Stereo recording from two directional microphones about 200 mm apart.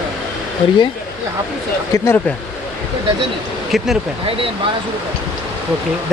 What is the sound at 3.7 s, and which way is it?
Speech, centre (ahead or behind).